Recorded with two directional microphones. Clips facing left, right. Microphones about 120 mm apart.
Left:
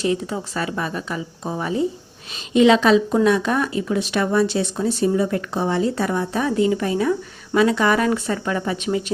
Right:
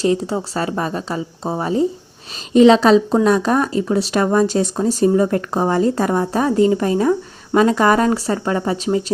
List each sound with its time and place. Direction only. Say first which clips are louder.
0.0 s speech: right 4 dB; 35° right (ahead or behind)